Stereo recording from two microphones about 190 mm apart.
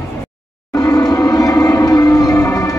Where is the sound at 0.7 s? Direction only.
15° left (ahead or behind).